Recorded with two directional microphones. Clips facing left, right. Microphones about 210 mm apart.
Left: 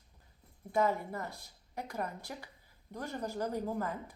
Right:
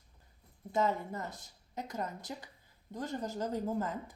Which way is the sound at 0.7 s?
20° right (ahead or behind).